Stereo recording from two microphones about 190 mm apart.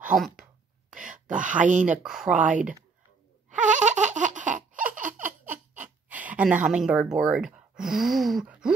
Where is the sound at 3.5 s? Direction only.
40° right (ahead or behind).